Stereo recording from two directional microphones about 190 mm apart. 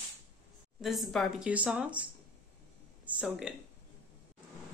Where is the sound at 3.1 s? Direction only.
5° right (ahead or behind).